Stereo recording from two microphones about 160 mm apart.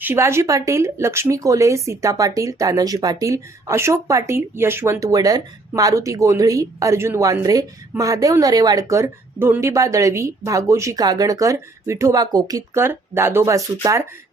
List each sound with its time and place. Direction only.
0.0 s speech: 15° right (ahead or behind)